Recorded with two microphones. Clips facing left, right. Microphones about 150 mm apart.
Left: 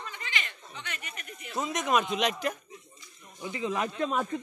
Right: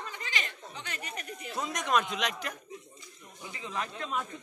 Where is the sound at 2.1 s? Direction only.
25° left (ahead or behind).